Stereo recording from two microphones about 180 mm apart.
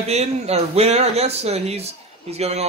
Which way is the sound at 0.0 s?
35° right (ahead or behind).